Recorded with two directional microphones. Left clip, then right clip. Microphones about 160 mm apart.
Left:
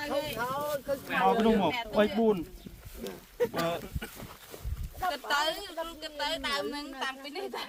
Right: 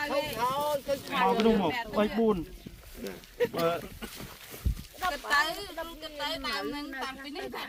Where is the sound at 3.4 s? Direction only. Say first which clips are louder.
Right 2 dB; 85° left.